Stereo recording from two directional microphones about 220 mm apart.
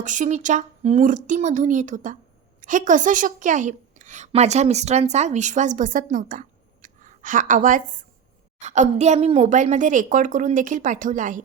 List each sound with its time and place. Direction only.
0.0 s a woman's voice: 35° right (ahead or behind)